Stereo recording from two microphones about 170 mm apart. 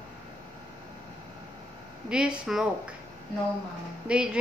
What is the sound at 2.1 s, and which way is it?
Speech, 5° right (ahead or behind).